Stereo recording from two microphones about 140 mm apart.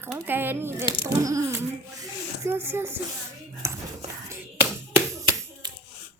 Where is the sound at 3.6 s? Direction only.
20° right (ahead or behind).